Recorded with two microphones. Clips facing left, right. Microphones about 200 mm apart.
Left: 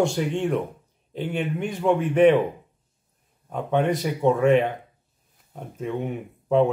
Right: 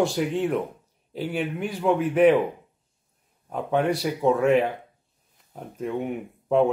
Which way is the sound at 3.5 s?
5° right (ahead or behind).